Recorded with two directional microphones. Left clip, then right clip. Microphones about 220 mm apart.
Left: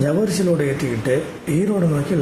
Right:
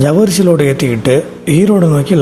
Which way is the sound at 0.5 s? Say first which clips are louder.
Right 9 dB; 40° right (ahead or behind).